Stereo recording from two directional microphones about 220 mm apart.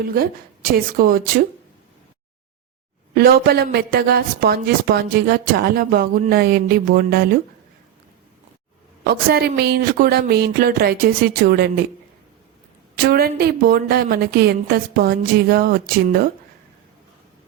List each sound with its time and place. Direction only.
0.0 s a woman's voice: 40° right (ahead or behind)
3.2 s speech: 45° right (ahead or behind)
9.0 s speech: 45° right (ahead or behind)
13.0 s speech: 45° right (ahead or behind)